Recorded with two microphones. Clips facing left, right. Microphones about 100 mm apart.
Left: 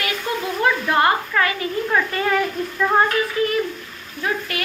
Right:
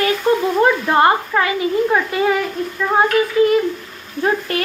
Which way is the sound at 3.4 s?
25° right (ahead or behind).